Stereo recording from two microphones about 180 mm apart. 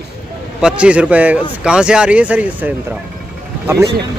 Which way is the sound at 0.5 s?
5° right (ahead or behind).